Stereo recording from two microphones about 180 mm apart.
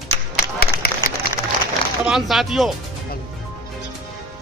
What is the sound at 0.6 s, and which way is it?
Run, 55° left (ahead or behind).